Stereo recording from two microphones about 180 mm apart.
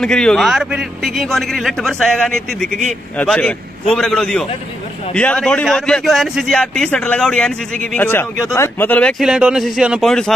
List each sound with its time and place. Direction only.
0.0 s a man's voice: 5° left (ahead or behind)
9.2 s a man's voice: 5° right (ahead or behind)